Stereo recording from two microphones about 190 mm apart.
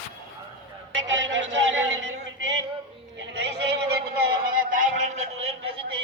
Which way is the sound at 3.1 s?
70° right (ahead or behind).